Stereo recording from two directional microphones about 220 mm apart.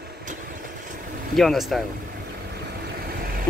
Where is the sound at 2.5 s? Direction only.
45° right (ahead or behind).